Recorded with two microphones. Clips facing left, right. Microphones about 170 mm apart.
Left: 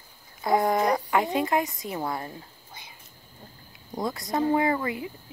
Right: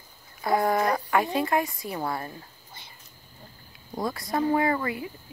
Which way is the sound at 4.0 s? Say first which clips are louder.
Even; 20° left (ahead or behind).